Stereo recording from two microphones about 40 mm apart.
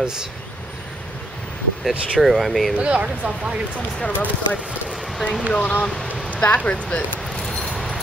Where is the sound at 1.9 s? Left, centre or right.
Centre.